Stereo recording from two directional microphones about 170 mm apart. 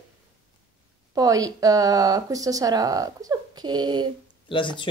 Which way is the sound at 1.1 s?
20° right (ahead or behind).